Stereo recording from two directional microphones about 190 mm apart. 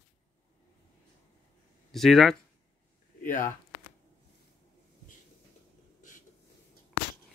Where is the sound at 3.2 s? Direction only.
45° left (ahead or behind).